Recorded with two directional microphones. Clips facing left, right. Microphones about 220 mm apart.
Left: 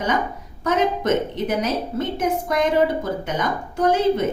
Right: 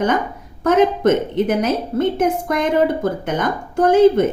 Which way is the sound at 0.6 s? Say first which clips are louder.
Right 7 dB; 50° right (ahead or behind).